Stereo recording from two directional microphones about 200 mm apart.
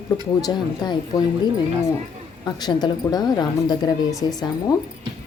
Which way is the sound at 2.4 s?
20° left (ahead or behind).